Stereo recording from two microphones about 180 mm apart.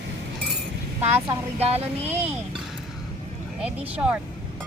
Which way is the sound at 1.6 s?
35° right (ahead or behind).